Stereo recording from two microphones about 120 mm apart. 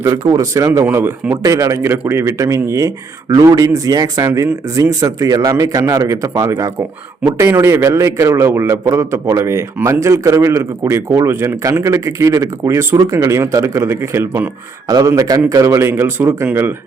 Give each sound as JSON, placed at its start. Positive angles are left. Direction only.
{"t": 0.3, "sound": "a man's voice", "side_deg": -30}